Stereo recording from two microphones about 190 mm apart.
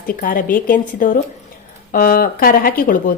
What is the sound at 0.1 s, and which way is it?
A woman's voice, 45° left (ahead or behind).